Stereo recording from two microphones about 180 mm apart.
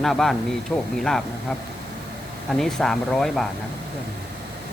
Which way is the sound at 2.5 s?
Centre (ahead or behind).